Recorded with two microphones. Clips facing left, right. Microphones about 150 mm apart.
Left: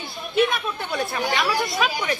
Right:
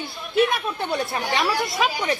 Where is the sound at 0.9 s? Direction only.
30° right (ahead or behind).